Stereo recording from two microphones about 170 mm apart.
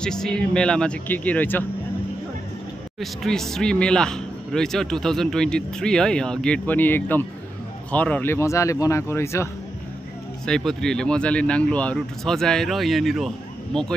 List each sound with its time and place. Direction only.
0.0 s speech: 5° left (ahead or behind)
3.0 s speech: centre (ahead or behind)
10.4 s speech: 5° left (ahead or behind)